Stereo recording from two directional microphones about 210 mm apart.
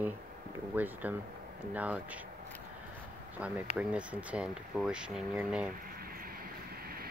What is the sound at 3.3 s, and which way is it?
Speech, 10° right (ahead or behind).